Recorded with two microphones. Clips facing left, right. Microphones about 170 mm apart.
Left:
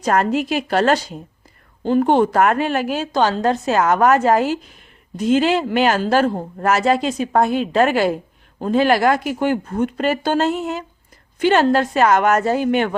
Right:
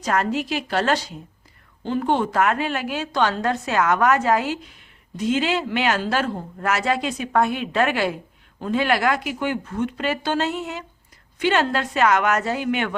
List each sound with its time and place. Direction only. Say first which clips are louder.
0.1 s a woman's voice: left 5 dB; 50° left (ahead or behind)